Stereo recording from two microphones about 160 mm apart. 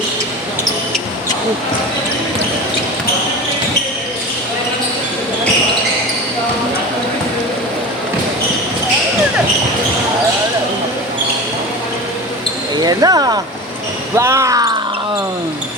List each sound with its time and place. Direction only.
12.7 s speech: 25° right (ahead or behind)